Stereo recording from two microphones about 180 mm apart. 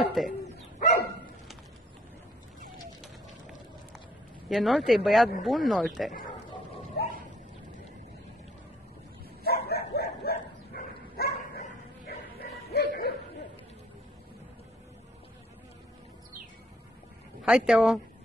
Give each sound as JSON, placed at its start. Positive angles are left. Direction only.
{"t": 0.0, "sound": "speech", "side_deg": 0}
{"t": 0.6, "sound": "dog", "side_deg": 45}
{"t": 4.5, "sound": "speech", "side_deg": 0}
{"t": 9.4, "sound": "bow-wow", "side_deg": 60}
{"t": 17.5, "sound": "speech", "side_deg": 0}